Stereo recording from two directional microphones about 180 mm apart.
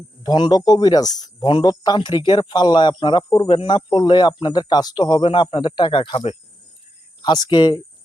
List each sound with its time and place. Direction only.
0.2 s speech: 25° left (ahead or behind)